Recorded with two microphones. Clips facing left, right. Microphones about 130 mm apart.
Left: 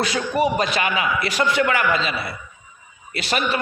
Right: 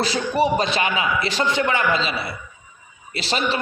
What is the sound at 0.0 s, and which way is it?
A man's voice, 30° right (ahead or behind).